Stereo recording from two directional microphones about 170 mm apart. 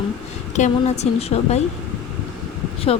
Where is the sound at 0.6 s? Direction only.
40° left (ahead or behind).